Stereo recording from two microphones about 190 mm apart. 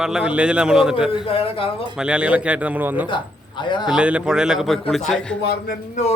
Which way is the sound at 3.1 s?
25° left (ahead or behind).